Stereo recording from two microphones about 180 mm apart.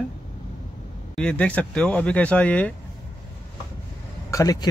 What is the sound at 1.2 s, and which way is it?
Speech, 5° left (ahead or behind).